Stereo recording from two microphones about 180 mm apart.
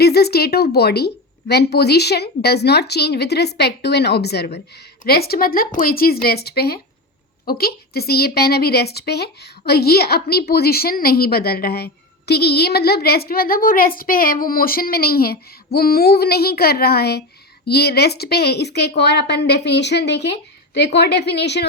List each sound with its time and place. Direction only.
0.0 s a woman's voice: 60° left (ahead or behind)